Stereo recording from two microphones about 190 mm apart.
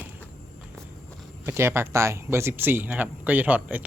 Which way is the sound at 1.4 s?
15° right (ahead or behind).